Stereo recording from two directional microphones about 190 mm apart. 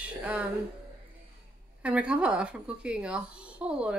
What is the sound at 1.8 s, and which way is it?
Speech, 5° right (ahead or behind).